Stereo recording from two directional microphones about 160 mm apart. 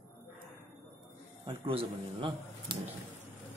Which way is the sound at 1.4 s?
35° right (ahead or behind).